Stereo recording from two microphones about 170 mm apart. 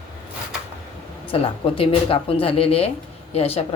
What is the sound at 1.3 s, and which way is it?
Speech, 35° left (ahead or behind).